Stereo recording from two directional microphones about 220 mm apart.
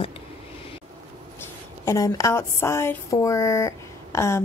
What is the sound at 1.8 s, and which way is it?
Speech, 15° left (ahead or behind).